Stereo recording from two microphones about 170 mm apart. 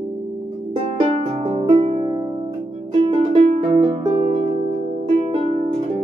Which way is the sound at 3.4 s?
40° right (ahead or behind).